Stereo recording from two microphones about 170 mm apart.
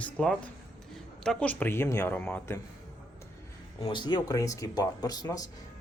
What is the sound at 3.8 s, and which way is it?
Speech, 25° left (ahead or behind).